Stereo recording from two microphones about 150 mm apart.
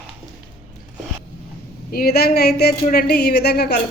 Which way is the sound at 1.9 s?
85° left.